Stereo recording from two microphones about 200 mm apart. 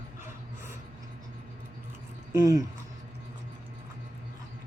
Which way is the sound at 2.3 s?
15° right (ahead or behind).